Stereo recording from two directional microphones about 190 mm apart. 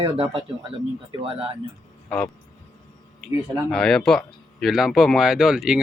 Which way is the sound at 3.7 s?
Centre (ahead or behind).